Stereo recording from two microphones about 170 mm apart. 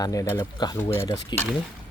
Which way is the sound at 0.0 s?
20° left (ahead or behind).